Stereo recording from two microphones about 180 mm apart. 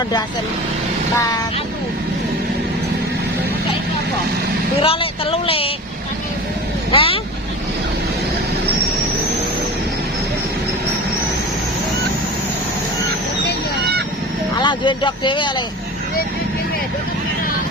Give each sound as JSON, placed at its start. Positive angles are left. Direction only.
{"t": 4.8, "sound": "speech", "side_deg": 30}
{"t": 6.9, "sound": "speech", "side_deg": 30}
{"t": 14.6, "sound": "speech", "side_deg": 25}